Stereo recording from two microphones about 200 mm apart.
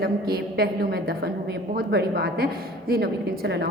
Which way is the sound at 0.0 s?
50° right (ahead or behind).